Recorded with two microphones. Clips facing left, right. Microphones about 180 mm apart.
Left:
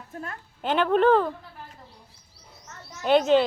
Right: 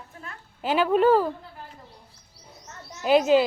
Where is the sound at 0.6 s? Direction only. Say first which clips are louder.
Even; 5° right (ahead or behind).